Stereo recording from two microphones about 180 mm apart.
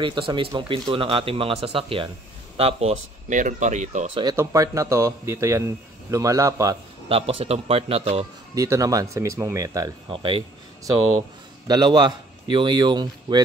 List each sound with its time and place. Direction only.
0.0 s speech: 25° right (ahead or behind)
4.1 s speech: 25° right (ahead or behind)
7.1 s speech: 30° right (ahead or behind)
8.5 s speech: 15° right (ahead or behind)
10.0 s speech: 30° right (ahead or behind)
11.6 s speech: 20° right (ahead or behind)